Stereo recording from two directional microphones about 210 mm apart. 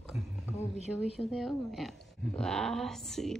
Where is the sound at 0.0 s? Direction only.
Centre (ahead or behind).